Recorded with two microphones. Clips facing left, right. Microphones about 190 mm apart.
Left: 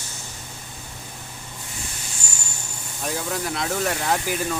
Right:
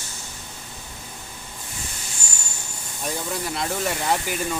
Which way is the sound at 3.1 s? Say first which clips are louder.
Left 1 dB; centre (ahead or behind).